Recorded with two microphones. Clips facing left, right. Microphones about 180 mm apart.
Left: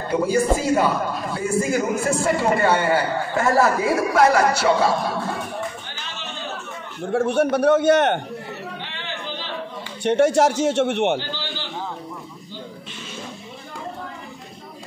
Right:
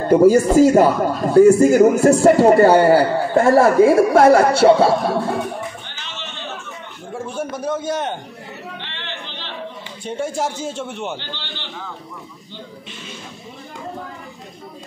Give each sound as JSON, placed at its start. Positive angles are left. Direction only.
{"t": 0.1, "sound": "a man's voice", "side_deg": -45}
{"t": 7.1, "sound": "a man's voice", "side_deg": 70}
{"t": 8.8, "sound": "chatter", "side_deg": 5}
{"t": 10.0, "sound": "a man's voice", "side_deg": 75}
{"t": 11.1, "sound": "a sound", "side_deg": 5}